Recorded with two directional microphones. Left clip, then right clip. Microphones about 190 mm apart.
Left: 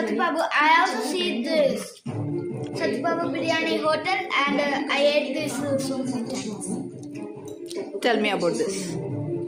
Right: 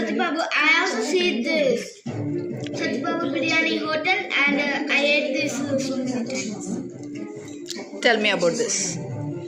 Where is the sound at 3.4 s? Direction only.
45° left (ahead or behind).